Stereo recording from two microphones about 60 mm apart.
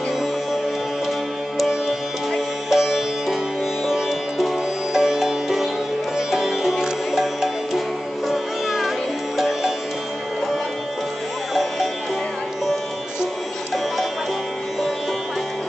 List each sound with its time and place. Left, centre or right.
1.6 s music: centre
3.8 s sitar: centre
6.1 s music: centre